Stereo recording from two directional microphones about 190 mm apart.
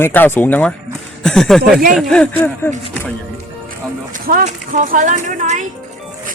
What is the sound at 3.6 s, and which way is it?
Speech, 50° right (ahead or behind).